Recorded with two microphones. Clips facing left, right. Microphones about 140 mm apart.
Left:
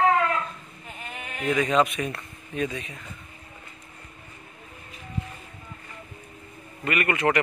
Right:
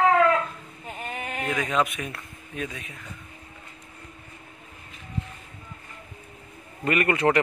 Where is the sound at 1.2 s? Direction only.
40° right (ahead or behind).